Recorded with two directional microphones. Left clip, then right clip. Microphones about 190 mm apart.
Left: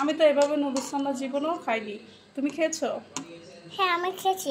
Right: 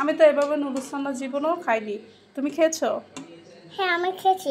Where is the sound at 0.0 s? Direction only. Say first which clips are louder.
Right 3 dB; 15° right (ahead or behind).